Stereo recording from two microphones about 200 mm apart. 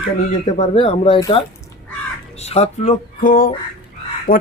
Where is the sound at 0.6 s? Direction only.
30° left (ahead or behind).